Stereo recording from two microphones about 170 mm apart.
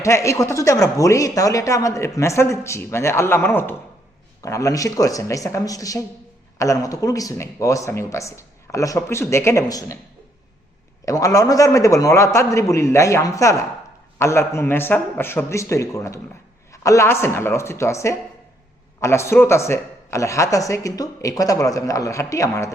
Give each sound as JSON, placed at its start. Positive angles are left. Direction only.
{"t": 0.0, "sound": "a man's voice", "side_deg": 15}
{"t": 11.0, "sound": "a man's voice", "side_deg": 20}